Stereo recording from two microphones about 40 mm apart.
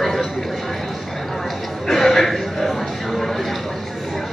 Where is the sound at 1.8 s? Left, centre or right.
Centre.